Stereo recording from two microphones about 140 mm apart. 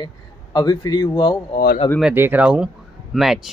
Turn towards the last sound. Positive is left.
turn(degrees=0)  # may be behind; listen again after turning